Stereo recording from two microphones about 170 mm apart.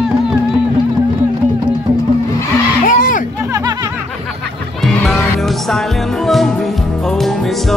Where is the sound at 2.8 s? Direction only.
50° left (ahead or behind).